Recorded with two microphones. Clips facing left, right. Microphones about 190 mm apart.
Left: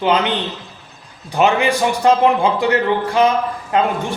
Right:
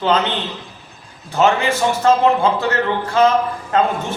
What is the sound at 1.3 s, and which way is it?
A man's voice, 15° left (ahead or behind).